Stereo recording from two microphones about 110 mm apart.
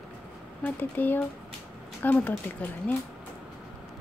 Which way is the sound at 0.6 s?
15° left (ahead or behind).